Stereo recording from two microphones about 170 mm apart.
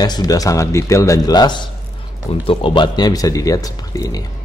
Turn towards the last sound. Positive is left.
turn(degrees=20)  # may be behind; listen again after turning